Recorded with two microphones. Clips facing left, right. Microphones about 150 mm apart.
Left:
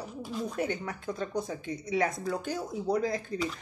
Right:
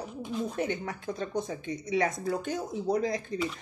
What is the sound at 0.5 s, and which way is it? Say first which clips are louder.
A child's voice: right 1 dB; 25° right (ahead or behind).